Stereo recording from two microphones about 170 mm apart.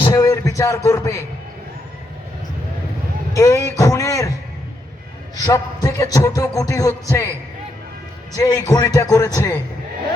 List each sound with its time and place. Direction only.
0.1 s a man's voice: 20° left (ahead or behind)
3.3 s music: 20° left (ahead or behind)
5.4 s music: 20° left (ahead or behind)
8.4 s music: 20° left (ahead or behind)